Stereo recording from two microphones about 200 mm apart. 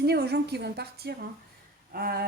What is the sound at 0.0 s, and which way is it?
A woman's voice, 55° right (ahead or behind).